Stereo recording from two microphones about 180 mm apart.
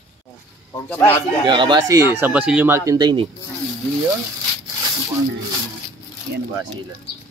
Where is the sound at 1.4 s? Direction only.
25° right (ahead or behind).